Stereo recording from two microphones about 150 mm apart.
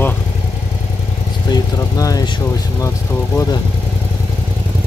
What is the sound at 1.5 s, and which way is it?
Vehicle, 25° left (ahead or behind).